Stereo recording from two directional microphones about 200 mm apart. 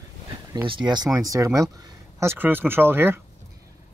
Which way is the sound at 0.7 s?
20° right (ahead or behind).